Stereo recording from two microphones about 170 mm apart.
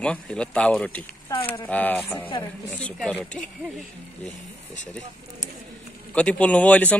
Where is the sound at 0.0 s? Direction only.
5° left (ahead or behind).